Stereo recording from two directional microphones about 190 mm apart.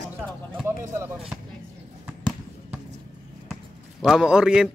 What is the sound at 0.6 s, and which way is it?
Speech, 15° right (ahead or behind).